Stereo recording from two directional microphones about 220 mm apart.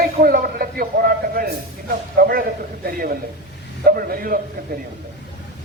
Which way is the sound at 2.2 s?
40° right (ahead or behind).